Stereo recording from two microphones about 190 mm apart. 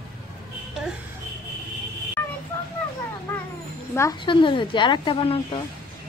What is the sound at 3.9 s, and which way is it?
Speech, 15° left (ahead or behind).